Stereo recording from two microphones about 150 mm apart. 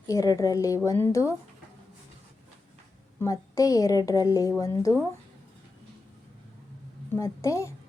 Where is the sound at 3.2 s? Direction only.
20° left (ahead or behind).